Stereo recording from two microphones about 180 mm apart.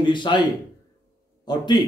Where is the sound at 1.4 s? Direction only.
25° left (ahead or behind).